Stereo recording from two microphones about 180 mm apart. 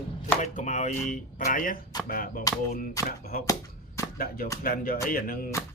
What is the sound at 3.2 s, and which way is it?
Speech, 55° left (ahead or behind).